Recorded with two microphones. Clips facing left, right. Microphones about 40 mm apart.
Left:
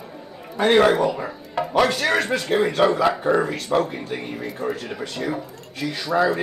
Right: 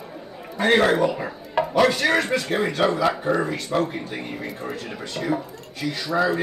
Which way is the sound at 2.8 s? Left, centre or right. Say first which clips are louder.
Left 1 dB; centre.